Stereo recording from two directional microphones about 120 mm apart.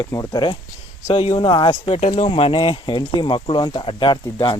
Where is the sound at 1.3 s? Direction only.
40° left (ahead or behind).